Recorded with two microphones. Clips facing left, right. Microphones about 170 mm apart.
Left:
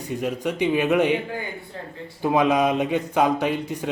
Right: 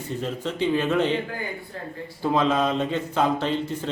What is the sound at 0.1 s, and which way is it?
Speech, 15° left (ahead or behind).